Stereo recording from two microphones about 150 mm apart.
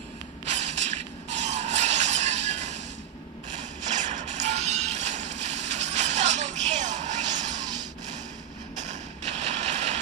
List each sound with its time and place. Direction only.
0.5 s vehicle: 50° right (ahead or behind)
3.8 s music: 55° right (ahead or behind)
8.7 s a sound: 50° right (ahead or behind)